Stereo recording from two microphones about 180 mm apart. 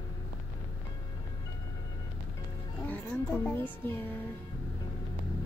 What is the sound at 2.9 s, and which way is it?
Music, 10° left (ahead or behind).